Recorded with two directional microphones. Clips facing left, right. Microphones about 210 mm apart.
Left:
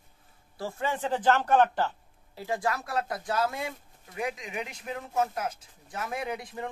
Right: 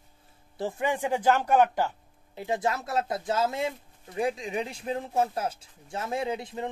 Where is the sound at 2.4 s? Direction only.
20° right (ahead or behind).